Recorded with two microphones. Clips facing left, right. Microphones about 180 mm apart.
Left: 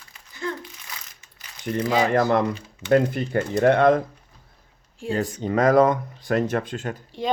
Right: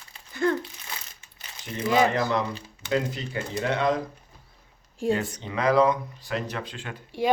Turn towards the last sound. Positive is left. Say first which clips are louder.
# right 2 dB
turn(degrees=-10)  # may be behind; listen again after turning